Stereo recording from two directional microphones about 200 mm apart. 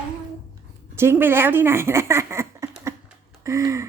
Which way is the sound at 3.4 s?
15° right (ahead or behind).